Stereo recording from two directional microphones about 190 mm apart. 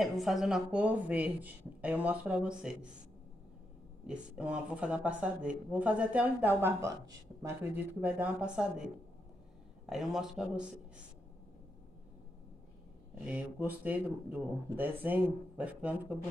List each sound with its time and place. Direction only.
0.0 s speech: centre (ahead or behind)
4.0 s speech: 5° right (ahead or behind)
13.2 s speech: 10° right (ahead or behind)